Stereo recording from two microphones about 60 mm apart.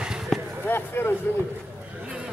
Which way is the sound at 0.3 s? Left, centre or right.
Centre.